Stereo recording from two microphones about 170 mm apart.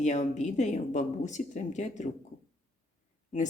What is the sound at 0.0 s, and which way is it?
A woman's voice, 45° left (ahead or behind).